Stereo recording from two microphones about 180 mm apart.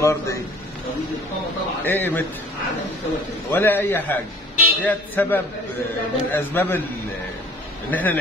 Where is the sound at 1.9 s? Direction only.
10° left (ahead or behind).